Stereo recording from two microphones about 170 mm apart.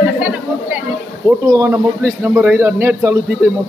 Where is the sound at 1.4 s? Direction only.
15° right (ahead or behind).